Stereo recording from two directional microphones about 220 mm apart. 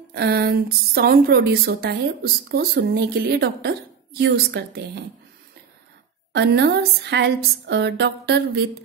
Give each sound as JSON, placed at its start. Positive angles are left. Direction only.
{"t": 0.1, "sound": "a woman's voice", "side_deg": -45}
{"t": 6.3, "sound": "a woman's voice", "side_deg": -50}